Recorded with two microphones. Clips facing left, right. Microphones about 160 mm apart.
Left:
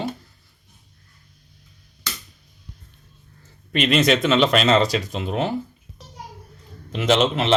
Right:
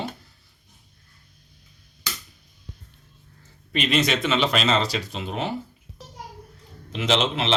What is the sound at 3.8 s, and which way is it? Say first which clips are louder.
Speech: left 5 dB; 55° left (ahead or behind).